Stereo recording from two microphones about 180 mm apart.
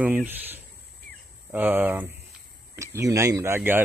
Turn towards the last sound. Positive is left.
turn(degrees=-10)  # may be behind; listen again after turning